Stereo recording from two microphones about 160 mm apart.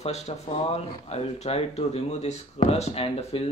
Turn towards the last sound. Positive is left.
turn(degrees=40)  # may be behind; listen again after turning